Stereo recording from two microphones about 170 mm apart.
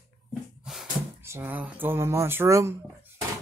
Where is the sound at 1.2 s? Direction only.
15° right (ahead or behind).